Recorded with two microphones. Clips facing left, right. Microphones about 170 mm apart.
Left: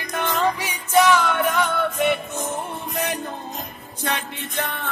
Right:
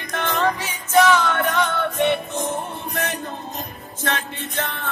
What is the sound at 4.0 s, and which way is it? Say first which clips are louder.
Music: right 1 dB; 15° left (ahead or behind).